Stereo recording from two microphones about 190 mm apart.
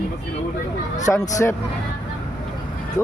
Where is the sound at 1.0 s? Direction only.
15° left (ahead or behind).